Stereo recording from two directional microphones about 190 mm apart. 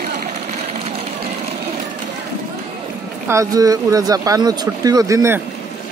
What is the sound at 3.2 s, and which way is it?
Speech, 15° right (ahead or behind).